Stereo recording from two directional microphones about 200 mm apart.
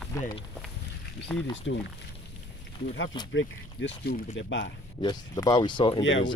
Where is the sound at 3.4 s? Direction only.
65° left (ahead or behind).